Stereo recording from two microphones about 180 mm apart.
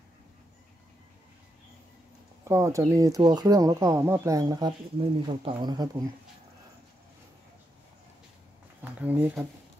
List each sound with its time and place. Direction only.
2.4 s speech: 15° right (ahead or behind)
8.8 s speech: 10° right (ahead or behind)